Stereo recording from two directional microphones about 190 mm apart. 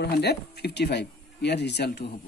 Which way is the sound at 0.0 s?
60° left (ahead or behind).